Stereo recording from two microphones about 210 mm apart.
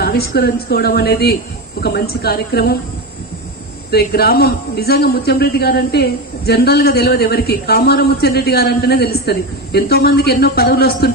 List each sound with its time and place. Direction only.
0.0 s a man's voice: 45° left (ahead or behind)
3.9 s a man's voice: 50° left (ahead or behind)